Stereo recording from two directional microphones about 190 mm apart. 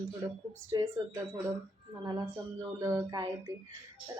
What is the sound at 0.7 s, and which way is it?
Speech, 15° right (ahead or behind).